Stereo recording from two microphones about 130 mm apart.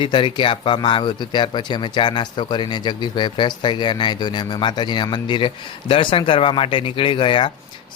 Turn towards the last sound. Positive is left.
turn(degrees=40)  # may be behind; listen again after turning